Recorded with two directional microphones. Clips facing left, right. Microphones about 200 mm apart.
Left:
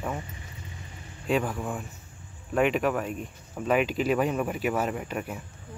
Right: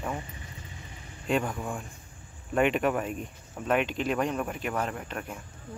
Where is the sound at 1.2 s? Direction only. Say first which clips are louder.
Left 2 dB; centre (ahead or behind).